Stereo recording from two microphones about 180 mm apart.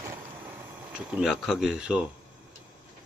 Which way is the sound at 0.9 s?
5° right (ahead or behind).